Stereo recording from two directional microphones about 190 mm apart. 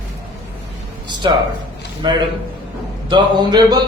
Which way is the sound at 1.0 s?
25° right (ahead or behind).